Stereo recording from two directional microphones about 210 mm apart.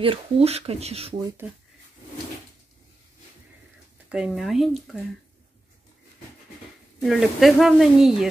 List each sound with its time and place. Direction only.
0.0 s speech: 25° right (ahead or behind)
1.1 s speech: 10° right (ahead or behind)
4.1 s speech: centre (ahead or behind)
7.0 s speech: centre (ahead or behind)